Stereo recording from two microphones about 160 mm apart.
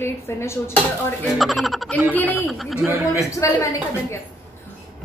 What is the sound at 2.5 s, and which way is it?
Speech, centre (ahead or behind).